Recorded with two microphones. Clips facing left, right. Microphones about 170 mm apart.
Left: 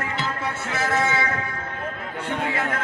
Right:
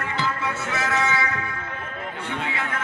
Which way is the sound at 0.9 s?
30° left (ahead or behind).